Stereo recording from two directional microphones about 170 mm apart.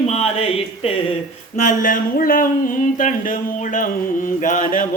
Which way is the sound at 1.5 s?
55° left (ahead or behind).